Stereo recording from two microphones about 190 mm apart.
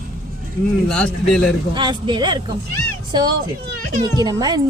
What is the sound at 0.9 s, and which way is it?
Speech, 5° left (ahead or behind).